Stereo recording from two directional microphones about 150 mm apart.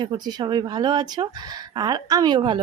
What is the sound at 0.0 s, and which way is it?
Speech, 30° right (ahead or behind).